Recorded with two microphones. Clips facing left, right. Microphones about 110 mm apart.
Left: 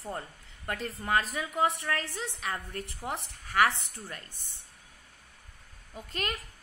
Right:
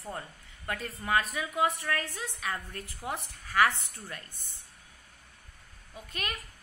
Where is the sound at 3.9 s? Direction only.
25° left (ahead or behind).